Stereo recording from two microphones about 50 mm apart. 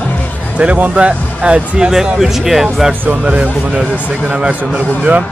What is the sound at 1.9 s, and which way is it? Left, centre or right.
Speech, centre.